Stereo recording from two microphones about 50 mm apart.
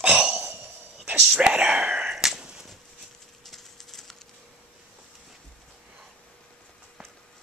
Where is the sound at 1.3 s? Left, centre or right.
Right.